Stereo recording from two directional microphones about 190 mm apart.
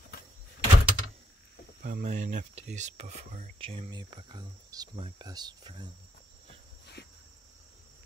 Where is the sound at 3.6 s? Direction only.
30° right (ahead or behind).